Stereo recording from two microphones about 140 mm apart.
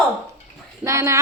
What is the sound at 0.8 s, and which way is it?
Speech, 20° right (ahead or behind).